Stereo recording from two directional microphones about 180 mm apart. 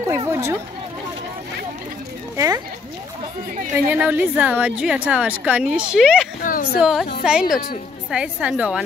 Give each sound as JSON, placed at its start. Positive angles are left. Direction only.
{"t": 0.1, "sound": "a woman's voice", "side_deg": -15}
{"t": 2.3, "sound": "speech", "side_deg": -20}
{"t": 3.9, "sound": "a woman's voice", "side_deg": -10}
{"t": 6.4, "sound": "a woman's voice", "side_deg": 55}
{"t": 6.8, "sound": "a woman's voice", "side_deg": 0}